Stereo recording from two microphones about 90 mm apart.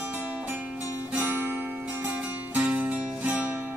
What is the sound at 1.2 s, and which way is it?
Music, 20° right (ahead or behind).